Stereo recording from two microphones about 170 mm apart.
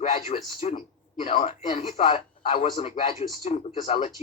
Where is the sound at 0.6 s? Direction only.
35° left (ahead or behind).